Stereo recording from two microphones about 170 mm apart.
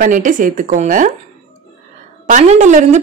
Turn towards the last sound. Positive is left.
turn(degrees=-45)  # may be behind; listen again after turning